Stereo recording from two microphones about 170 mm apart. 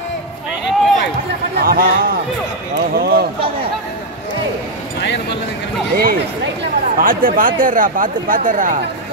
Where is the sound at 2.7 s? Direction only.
65° right (ahead or behind).